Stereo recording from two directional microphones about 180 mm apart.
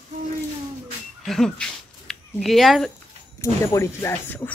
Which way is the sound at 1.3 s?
5° left (ahead or behind).